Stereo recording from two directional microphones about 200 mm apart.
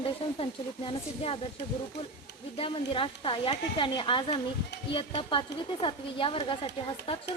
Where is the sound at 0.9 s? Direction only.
30° left (ahead or behind).